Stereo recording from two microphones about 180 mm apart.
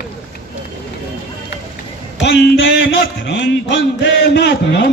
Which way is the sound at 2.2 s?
70° left (ahead or behind).